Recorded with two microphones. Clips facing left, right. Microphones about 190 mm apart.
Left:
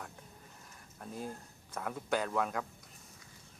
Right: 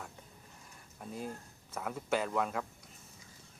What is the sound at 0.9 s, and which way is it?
Speech, centre (ahead or behind).